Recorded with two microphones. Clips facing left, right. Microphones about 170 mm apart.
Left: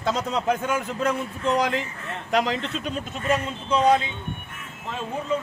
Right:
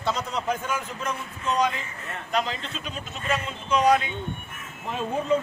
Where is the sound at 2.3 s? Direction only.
75° left (ahead or behind).